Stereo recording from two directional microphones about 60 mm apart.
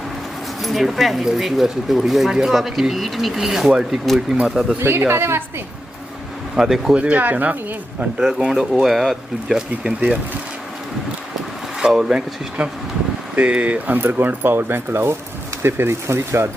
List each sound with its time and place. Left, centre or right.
0.6 s speech: centre
4.8 s speech: right
6.6 s speech: centre
7.0 s speech: right
8.4 s speech: centre
9.8 s speech: right
11.8 s speech: centre
12.6 s speech: right